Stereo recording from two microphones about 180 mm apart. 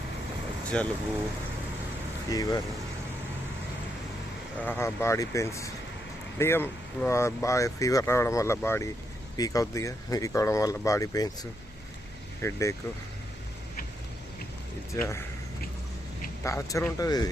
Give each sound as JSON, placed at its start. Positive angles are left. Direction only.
{"t": 0.7, "sound": "speech", "side_deg": 5}
{"t": 2.3, "sound": "speech", "side_deg": 20}
{"t": 4.6, "sound": "speech", "side_deg": 10}
{"t": 12.4, "sound": "speech", "side_deg": 15}
{"t": 16.4, "sound": "speech", "side_deg": 15}